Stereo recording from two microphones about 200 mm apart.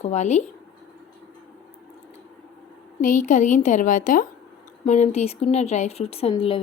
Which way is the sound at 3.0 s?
40° left (ahead or behind).